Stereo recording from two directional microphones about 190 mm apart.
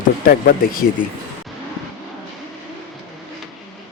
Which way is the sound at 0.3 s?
50° left (ahead or behind).